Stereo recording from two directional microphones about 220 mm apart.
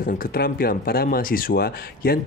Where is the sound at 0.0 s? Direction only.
40° left (ahead or behind).